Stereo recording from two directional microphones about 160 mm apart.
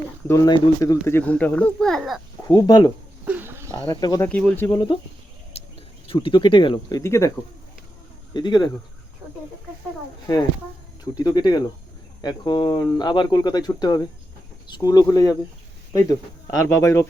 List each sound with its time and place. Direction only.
0.3 s speech: 25° left (ahead or behind); by 2.2 s centre (ahead or behind)
2.4 s speech: 25° left (ahead or behind)
3.2 s a sound: 10° right (ahead or behind)
3.8 s speech: 20° left (ahead or behind)
4.3 s speech: 10° left (ahead or behind)
5.5 s bird: 40° left (ahead or behind)
6.1 s speech: 30° left (ahead or behind)
7.0 s speech: 20° left (ahead or behind)
11.2 s speech: 25° left (ahead or behind)